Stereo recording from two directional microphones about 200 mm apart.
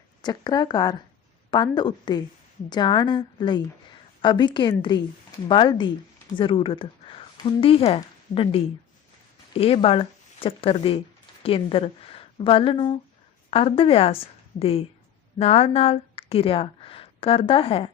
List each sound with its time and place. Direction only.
0.2 s a woman's voice: 20° left (ahead or behind)